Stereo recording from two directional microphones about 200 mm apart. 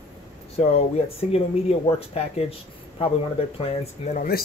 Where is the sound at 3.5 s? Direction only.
35° left (ahead or behind).